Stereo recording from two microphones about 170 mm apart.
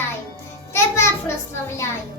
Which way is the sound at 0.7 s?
15° left (ahead or behind).